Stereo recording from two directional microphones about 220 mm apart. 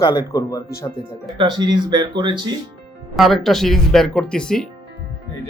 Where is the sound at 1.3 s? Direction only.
20° right (ahead or behind).